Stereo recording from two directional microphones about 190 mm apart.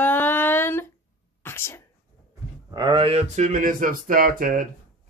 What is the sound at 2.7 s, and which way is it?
Speech, 20° right (ahead or behind).